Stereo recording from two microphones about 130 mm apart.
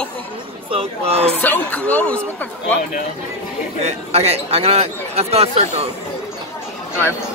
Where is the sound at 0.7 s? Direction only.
50° right (ahead or behind).